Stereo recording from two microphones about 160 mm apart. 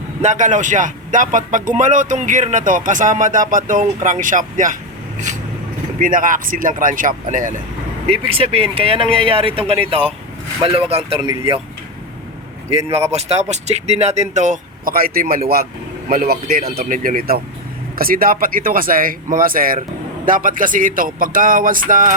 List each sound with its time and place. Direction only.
0.2 s speech: 50° right (ahead or behind)
6.0 s speech: 55° right (ahead or behind)
8.0 s speech: 40° right (ahead or behind)
12.7 s speech: 40° right (ahead or behind); by 16.6 s 70° right (ahead or behind)
16.7 s speech: 55° right (ahead or behind)